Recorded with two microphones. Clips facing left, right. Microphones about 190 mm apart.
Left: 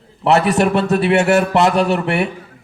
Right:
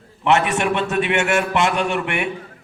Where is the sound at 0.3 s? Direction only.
35° left (ahead or behind).